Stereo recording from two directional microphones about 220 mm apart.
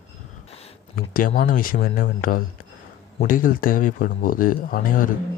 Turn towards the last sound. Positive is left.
turn(degrees=40)  # may be behind; listen again after turning